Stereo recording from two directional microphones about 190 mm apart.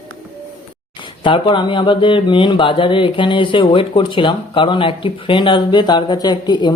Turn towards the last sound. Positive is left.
turn(degrees=20)  # may be behind; listen again after turning